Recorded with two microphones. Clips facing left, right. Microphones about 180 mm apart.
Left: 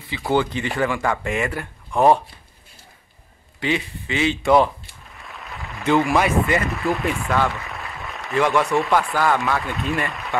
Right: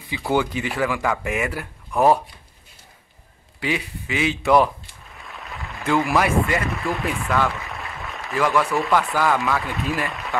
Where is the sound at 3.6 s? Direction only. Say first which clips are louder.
Left 2 dB; 5° right (ahead or behind).